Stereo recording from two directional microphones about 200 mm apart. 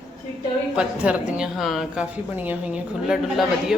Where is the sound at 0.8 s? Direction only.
5° right (ahead or behind).